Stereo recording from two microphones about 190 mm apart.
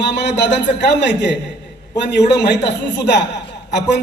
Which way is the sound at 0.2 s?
65° left (ahead or behind).